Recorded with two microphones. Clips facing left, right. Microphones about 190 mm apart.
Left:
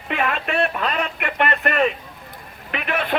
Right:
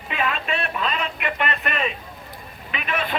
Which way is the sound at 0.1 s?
60° left (ahead or behind).